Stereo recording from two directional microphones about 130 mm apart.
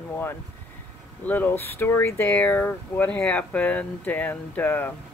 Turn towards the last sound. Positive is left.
turn(degrees=15)  # may be behind; listen again after turning